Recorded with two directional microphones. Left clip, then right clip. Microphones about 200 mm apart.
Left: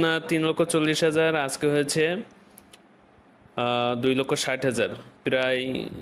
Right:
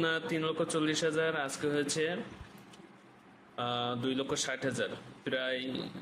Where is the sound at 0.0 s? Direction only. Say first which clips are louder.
Left 8 dB; 40° left (ahead or behind).